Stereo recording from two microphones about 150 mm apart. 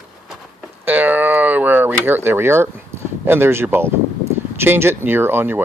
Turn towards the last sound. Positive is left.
turn(degrees=-15)  # may be behind; listen again after turning